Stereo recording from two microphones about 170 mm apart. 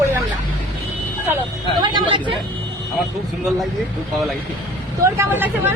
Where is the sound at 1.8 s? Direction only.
30° right (ahead or behind).